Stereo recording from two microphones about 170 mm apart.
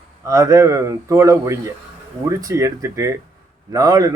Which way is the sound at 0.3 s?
20° right (ahead or behind).